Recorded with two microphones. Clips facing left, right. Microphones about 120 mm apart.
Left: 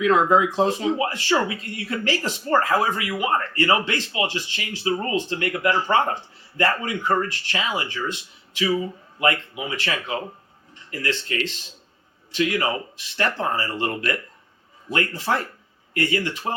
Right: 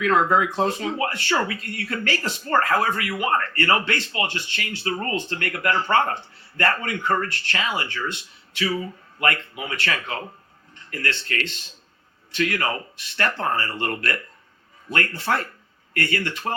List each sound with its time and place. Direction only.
0.0 s speech: 20° left (ahead or behind)